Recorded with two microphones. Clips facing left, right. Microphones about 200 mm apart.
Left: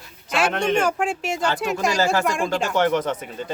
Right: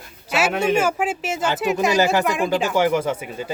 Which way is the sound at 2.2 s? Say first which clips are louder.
Right 2 dB; 5° right (ahead or behind).